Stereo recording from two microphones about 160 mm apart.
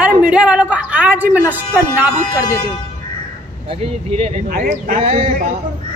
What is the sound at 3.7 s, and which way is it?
Speech, 40° right (ahead or behind).